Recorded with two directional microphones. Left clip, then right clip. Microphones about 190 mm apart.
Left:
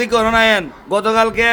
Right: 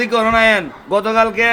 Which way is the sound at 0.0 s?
10° left (ahead or behind).